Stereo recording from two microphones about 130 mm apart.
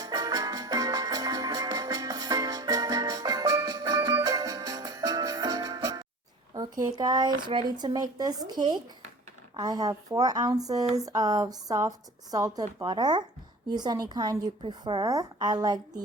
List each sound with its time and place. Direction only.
0.0 s music: 30° right (ahead or behind)
6.5 s a woman's voice: 30° right (ahead or behind)